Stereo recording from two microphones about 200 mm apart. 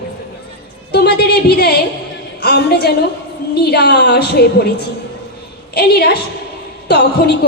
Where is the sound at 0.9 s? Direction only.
55° left (ahead or behind).